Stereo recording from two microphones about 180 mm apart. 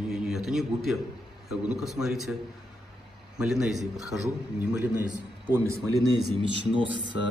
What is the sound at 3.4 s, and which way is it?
A man's voice, 5° right (ahead or behind).